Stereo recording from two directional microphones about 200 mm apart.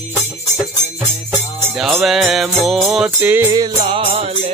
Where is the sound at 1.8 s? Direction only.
Centre (ahead or behind).